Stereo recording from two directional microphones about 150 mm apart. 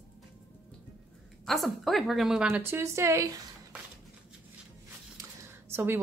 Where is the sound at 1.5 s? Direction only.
Centre (ahead or behind).